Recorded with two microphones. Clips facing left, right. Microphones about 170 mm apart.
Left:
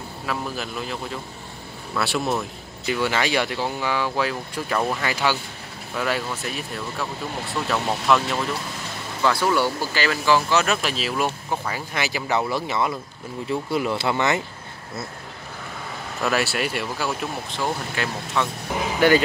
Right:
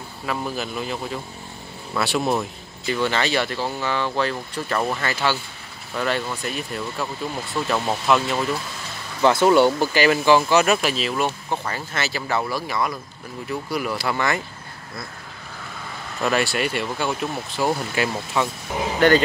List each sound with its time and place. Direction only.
0.3 s speech: centre (ahead or behind)
9.2 s speech: 20° right (ahead or behind); by 14.4 s 20° left (ahead or behind)
16.2 s speech: 5° left (ahead or behind)
17.6 s speech: 10° right (ahead or behind)
18.9 s speech: 10° left (ahead or behind)